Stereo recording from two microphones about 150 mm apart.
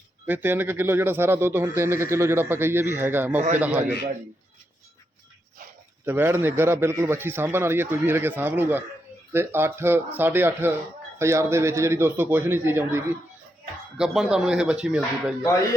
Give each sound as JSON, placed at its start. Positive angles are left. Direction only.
{"t": 0.3, "sound": "speech", "side_deg": -15}
{"t": 6.1, "sound": "speech", "side_deg": -15}
{"t": 14.0, "sound": "speech", "side_deg": -5}